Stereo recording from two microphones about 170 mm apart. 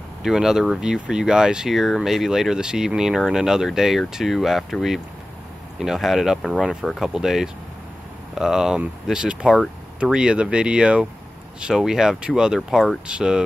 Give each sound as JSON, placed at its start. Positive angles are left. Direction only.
{"t": 0.2, "sound": "speech", "side_deg": -5}